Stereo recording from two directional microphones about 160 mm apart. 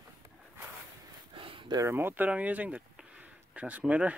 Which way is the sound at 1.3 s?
35° right (ahead or behind).